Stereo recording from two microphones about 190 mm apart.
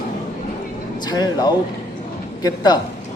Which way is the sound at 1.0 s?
20° left (ahead or behind).